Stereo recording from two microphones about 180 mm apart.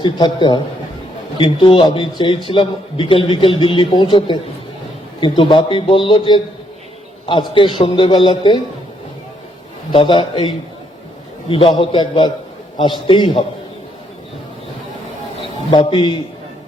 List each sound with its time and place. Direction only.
0.0 s a man's voice: 25° left (ahead or behind)
5.4 s a man's voice: 30° left (ahead or behind)
9.9 s a man's voice: 30° left (ahead or behind)
15.7 s a man's voice: 25° left (ahead or behind)